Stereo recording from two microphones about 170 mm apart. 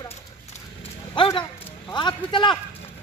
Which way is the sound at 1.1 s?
30° left (ahead or behind).